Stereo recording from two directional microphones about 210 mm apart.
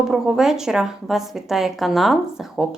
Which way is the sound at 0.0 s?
Centre (ahead or behind).